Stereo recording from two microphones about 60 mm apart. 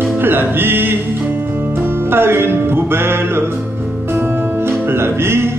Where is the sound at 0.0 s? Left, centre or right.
Right.